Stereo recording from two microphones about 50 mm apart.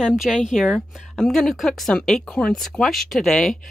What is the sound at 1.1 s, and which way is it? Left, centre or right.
Speech, centre.